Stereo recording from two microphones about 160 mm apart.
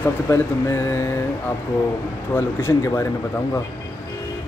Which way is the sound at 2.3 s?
15° left (ahead or behind).